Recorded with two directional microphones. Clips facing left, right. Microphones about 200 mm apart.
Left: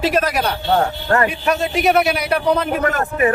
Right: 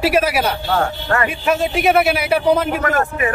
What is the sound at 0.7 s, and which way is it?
Speech, 35° left (ahead or behind).